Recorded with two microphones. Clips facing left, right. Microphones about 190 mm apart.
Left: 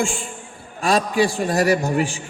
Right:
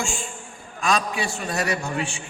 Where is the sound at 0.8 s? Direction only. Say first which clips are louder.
Left 6 dB; 35° left (ahead or behind).